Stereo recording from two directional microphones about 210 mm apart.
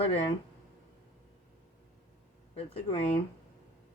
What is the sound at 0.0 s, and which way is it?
Speech, 25° left (ahead or behind).